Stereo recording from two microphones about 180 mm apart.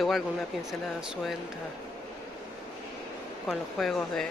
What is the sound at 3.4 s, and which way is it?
Speech, centre (ahead or behind).